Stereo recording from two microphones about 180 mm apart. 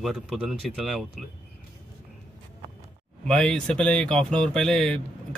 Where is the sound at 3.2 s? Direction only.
5° left (ahead or behind).